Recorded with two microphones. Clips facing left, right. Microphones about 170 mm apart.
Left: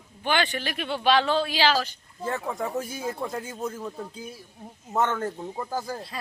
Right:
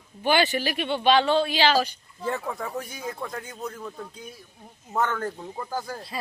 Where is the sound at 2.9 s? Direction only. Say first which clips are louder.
Left 3 dB; 30° left (ahead or behind).